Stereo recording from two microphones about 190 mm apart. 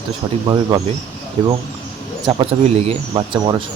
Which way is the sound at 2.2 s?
30° right (ahead or behind).